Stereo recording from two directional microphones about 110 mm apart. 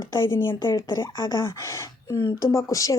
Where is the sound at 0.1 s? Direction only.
20° left (ahead or behind).